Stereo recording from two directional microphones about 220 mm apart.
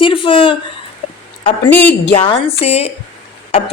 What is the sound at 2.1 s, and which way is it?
Speech, 25° left (ahead or behind).